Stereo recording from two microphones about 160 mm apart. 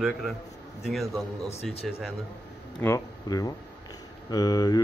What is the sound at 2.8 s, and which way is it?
Speech, 15° left (ahead or behind).